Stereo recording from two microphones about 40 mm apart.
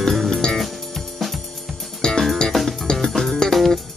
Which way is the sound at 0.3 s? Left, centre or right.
Centre.